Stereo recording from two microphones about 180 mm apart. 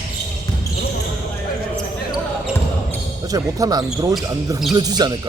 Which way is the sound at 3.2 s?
20° right (ahead or behind).